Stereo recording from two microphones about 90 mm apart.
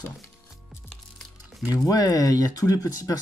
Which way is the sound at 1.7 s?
45° left (ahead or behind).